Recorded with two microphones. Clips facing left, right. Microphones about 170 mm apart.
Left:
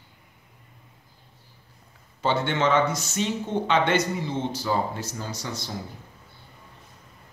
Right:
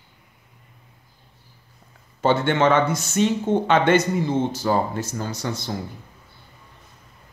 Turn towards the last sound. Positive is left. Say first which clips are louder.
# right 5 dB
turn(degrees=-55)  # may be behind; listen again after turning